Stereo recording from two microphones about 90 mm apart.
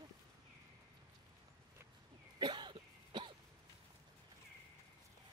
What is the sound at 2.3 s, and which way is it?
Cough, 55° right (ahead or behind).